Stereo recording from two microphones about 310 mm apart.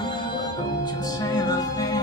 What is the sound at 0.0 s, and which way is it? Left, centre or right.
Music, centre.